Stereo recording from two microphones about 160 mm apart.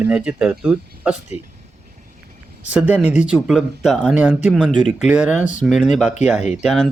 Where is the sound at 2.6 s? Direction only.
5° right (ahead or behind).